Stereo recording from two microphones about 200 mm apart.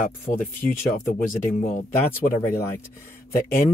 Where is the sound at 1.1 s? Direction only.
45° left (ahead or behind).